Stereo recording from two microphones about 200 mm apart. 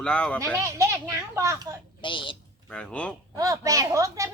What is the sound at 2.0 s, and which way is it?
Speech, 25° left (ahead or behind).